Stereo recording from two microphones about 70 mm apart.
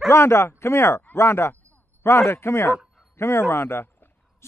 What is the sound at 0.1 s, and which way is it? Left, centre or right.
Speech, left.